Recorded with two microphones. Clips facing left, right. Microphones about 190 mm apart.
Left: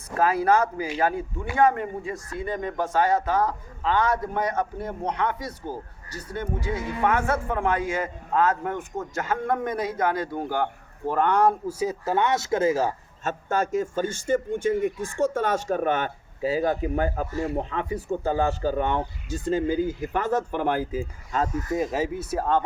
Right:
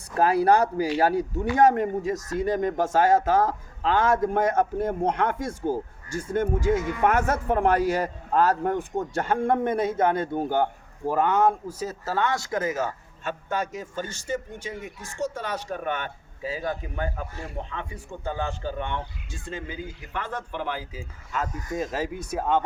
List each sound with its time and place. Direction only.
0.4 s a man's voice: 35° right (ahead or behind); by 10.7 s 20° right (ahead or behind)
11.0 s speech: 5° right (ahead or behind)
11.7 s a man's voice: 10° left (ahead or behind); by 21.1 s 50° left (ahead or behind)
21.7 s speech: 5° left (ahead or behind)